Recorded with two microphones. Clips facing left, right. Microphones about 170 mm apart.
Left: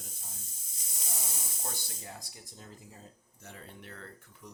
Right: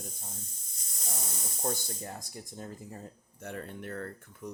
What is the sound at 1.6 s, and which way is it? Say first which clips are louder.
Speech: right 11 dB; 45° right (ahead or behind).